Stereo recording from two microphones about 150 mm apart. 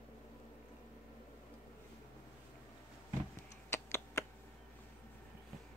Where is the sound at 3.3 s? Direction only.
20° left (ahead or behind).